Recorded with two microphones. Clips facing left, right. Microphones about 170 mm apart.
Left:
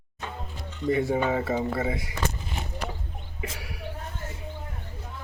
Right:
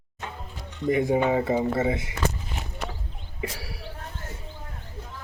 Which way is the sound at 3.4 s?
35° right (ahead or behind).